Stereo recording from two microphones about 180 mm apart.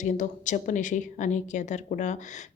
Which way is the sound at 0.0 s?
45° left (ahead or behind).